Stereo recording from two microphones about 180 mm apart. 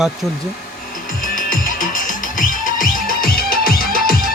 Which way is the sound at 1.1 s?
50° left (ahead or behind).